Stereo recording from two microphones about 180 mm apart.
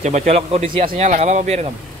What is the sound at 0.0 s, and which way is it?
Speech, 40° right (ahead or behind).